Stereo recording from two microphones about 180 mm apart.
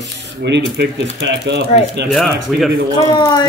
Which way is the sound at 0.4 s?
70° right (ahead or behind).